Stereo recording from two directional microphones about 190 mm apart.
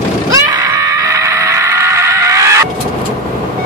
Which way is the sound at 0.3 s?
20° right (ahead or behind).